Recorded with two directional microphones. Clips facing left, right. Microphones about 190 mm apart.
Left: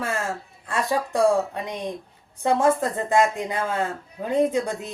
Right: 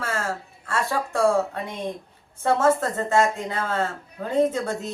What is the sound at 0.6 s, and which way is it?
Speech, 15° left (ahead or behind).